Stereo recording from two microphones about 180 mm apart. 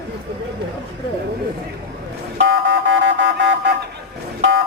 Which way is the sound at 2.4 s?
75° right (ahead or behind).